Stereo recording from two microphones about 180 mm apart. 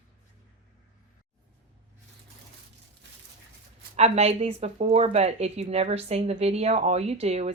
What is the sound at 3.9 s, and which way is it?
Speech, 35° right (ahead or behind).